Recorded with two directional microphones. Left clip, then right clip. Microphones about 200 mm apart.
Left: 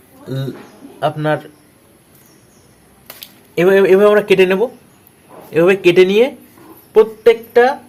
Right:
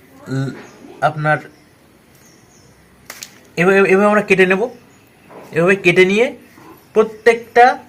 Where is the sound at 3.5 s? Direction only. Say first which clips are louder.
Left 2 dB; 45° left (ahead or behind).